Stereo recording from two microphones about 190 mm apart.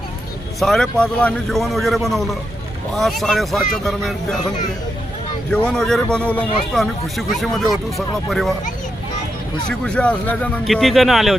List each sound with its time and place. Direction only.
0.6 s a man's voice: centre (ahead or behind)
5.5 s a man's voice: 5° left (ahead or behind)
9.6 s a man's voice: 5° left (ahead or behind)